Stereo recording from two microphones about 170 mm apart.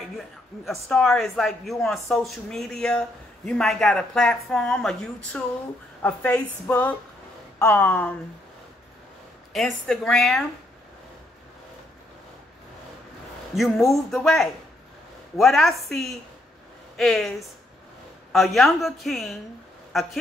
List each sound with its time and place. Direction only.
0.7 s a woman's voice: 5° left (ahead or behind)
9.5 s speech: centre (ahead or behind)
13.6 s speech: centre (ahead or behind)